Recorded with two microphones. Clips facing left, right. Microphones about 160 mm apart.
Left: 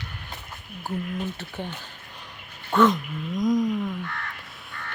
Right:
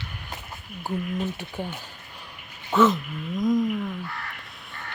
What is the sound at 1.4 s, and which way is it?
Speech, 10° right (ahead or behind).